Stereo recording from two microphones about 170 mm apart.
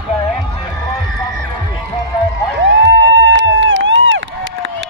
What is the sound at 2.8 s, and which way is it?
Run, 90° right.